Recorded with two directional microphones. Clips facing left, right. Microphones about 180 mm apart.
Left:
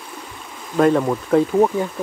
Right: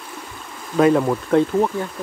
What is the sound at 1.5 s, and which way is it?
Speech, 20° left (ahead or behind).